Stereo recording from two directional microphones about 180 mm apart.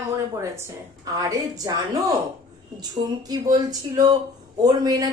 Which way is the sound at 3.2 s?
20° right (ahead or behind).